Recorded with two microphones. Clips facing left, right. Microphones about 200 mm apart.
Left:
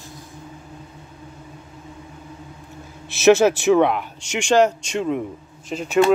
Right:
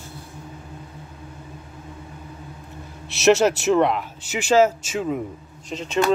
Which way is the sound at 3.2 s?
Centre (ahead or behind).